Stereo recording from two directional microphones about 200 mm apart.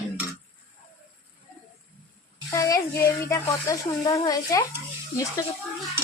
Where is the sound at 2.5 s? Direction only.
15° left (ahead or behind).